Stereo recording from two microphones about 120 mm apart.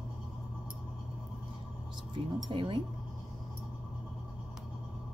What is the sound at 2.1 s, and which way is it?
Speech, 40° right (ahead or behind).